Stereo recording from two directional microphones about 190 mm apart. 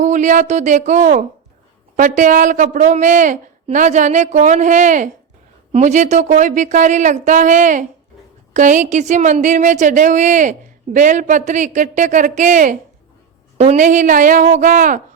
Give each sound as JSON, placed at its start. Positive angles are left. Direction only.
{"t": 0.0, "sound": "a woman's voice", "side_deg": -40}